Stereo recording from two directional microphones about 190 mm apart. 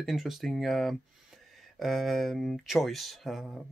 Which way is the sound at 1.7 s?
Centre (ahead or behind).